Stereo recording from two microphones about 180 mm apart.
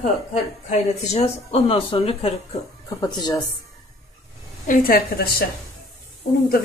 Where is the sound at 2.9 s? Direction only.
25° left (ahead or behind).